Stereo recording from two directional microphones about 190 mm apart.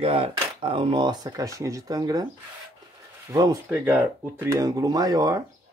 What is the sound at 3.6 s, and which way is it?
Speech, 10° right (ahead or behind).